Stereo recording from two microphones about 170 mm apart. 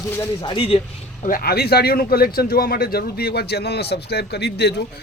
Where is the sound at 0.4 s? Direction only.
30° left (ahead or behind).